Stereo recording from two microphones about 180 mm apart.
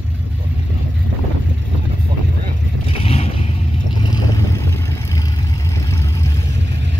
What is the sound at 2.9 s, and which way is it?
Vehicle, 35° left (ahead or behind).